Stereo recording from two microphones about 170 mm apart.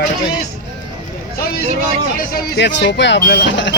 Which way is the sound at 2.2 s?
85° left.